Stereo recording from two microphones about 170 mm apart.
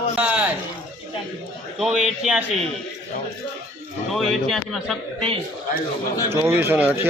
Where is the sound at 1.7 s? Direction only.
5° right (ahead or behind).